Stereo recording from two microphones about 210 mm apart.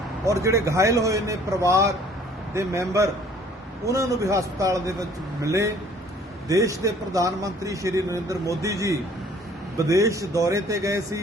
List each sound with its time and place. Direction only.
0.3 s a man's voice: 15° right (ahead or behind)